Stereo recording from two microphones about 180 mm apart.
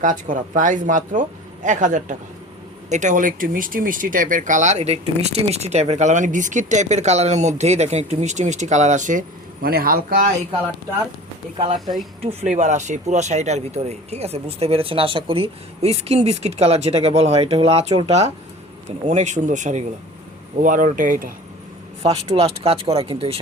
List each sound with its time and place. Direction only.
0.0 s speech: 45° right (ahead or behind)
9.6 s speech: 55° right (ahead or behind)
11.5 s speech: 30° right (ahead or behind)
12.2 s speech: 40° right (ahead or behind)
19.0 s speech: 40° right (ahead or behind)
22.1 s speech: 35° right (ahead or behind)